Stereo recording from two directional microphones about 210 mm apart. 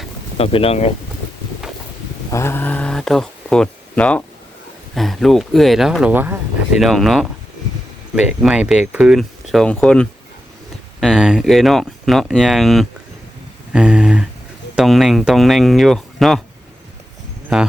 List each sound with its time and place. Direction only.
0.3 s speech: 25° left (ahead or behind)
2.3 s speech: 10° left (ahead or behind)
13.7 s a sound: 5° right (ahead or behind)
14.8 s speech: centre (ahead or behind)